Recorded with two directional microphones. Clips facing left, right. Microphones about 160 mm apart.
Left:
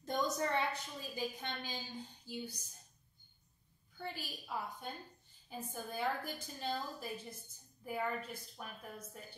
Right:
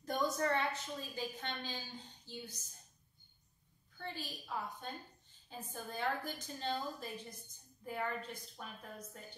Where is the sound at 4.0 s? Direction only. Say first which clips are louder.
Even; 10° left (ahead or behind).